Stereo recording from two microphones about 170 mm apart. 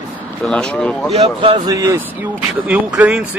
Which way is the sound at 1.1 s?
35° right (ahead or behind).